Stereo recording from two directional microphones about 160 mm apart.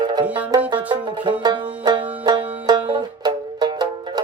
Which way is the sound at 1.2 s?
30° right (ahead or behind).